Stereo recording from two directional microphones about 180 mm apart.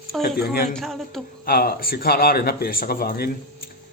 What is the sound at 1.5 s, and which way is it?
A man's voice, 55° left (ahead or behind).